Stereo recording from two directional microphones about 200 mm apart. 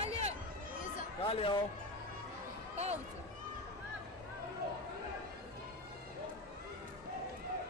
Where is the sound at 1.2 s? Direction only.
30° left (ahead or behind).